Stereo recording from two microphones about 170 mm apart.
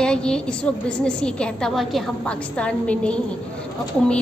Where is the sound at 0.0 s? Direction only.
5° left (ahead or behind).